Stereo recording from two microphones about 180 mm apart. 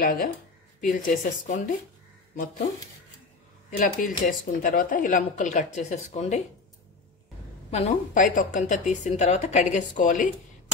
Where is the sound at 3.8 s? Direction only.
45° left (ahead or behind).